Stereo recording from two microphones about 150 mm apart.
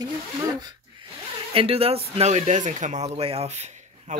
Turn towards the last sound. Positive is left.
turn(degrees=-50)  # may be behind; listen again after turning